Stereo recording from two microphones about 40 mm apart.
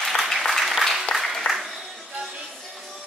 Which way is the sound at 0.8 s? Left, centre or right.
Centre.